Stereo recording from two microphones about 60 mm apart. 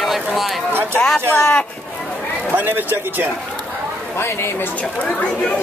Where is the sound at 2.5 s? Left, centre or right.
Right.